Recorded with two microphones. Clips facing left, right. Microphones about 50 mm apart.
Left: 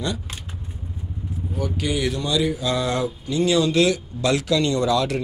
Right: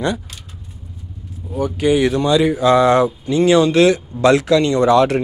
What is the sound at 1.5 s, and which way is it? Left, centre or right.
Speech, right.